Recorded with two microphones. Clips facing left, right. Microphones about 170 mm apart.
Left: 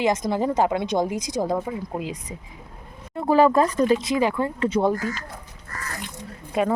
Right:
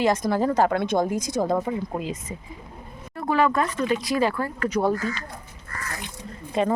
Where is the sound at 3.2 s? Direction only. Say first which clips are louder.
Left 5 dB; 35° left (ahead or behind).